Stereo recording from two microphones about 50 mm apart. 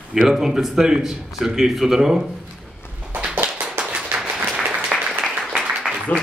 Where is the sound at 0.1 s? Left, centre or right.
Centre.